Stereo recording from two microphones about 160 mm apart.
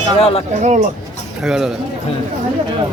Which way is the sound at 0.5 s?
50° right (ahead or behind).